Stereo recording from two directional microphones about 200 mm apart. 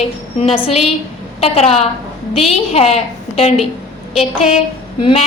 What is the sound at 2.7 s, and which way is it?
Speech, 30° left (ahead or behind).